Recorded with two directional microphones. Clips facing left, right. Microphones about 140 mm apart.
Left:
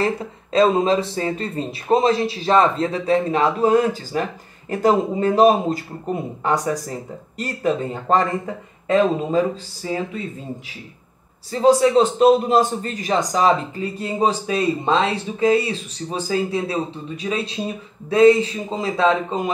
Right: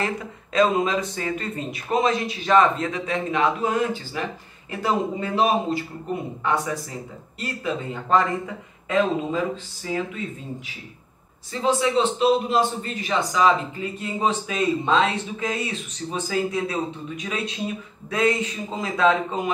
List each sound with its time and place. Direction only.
0.0 s speech: 30° left (ahead or behind)
11.5 s speech: 40° left (ahead or behind)
18.1 s speech: 30° left (ahead or behind)